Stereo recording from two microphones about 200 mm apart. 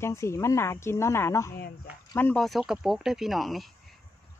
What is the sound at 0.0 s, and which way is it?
A man's voice, 15° left (ahead or behind).